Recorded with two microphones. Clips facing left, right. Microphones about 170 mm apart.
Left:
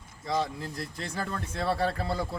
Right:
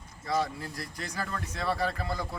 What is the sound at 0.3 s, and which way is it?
A man's voice, 20° left (ahead or behind).